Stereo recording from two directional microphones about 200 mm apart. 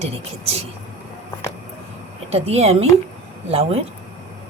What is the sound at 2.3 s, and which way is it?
A woman's voice, 30° right (ahead or behind).